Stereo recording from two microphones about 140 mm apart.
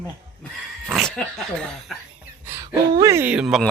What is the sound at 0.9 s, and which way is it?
Speech, centre (ahead or behind).